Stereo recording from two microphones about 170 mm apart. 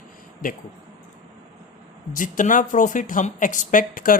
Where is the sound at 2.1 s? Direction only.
50° left (ahead or behind).